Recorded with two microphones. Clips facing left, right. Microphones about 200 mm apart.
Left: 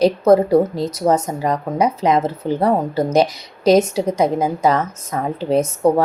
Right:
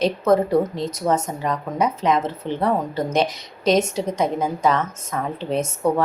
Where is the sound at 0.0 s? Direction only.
35° left (ahead or behind).